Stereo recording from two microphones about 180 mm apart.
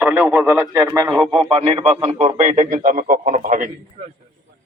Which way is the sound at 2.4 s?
45° right (ahead or behind).